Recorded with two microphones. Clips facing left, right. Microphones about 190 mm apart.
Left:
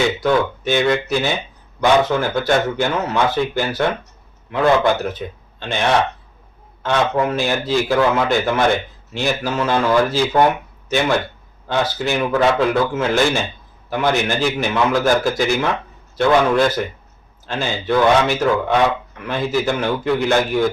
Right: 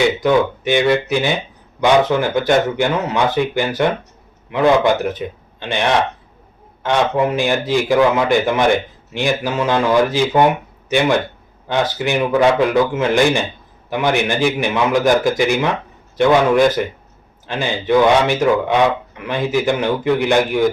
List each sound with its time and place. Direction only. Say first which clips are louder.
0.2 s a man's voice: right 2 dB; 15° right (ahead or behind)